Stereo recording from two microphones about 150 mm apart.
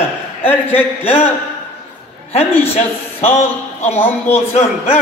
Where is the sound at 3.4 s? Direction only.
40° left (ahead or behind).